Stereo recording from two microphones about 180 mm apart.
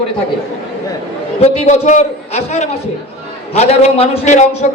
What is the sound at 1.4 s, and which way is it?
A man's voice, 40° left (ahead or behind).